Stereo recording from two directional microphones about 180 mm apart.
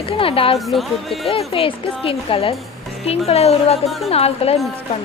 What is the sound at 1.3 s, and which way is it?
A woman's voice, 30° left (ahead or behind).